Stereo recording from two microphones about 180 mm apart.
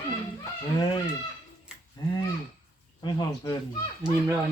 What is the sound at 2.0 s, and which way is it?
Speech, 20° left (ahead or behind).